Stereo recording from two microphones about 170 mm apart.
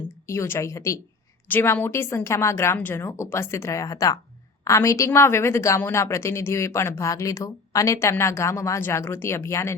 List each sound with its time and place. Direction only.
0.3 s a woman's voice: 15° left (ahead or behind)